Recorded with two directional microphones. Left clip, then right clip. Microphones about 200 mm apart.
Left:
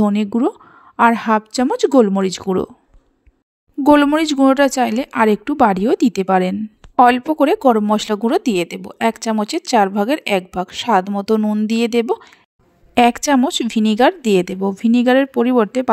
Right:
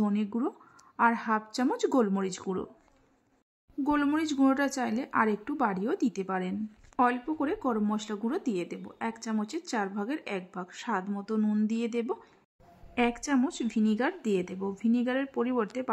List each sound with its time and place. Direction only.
0.0 s speech: 40° left (ahead or behind)
3.8 s speech: 45° left (ahead or behind)